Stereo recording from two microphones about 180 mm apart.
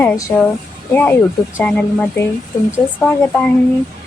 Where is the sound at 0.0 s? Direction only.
15° left (ahead or behind).